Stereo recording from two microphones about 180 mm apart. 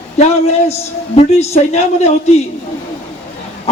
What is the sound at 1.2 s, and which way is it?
Speech, 35° left (ahead or behind).